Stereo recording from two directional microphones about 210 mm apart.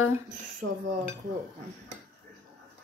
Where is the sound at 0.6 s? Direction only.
55° right (ahead or behind).